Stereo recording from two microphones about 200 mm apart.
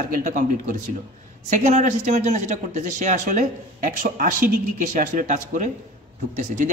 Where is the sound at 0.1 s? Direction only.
40° right (ahead or behind).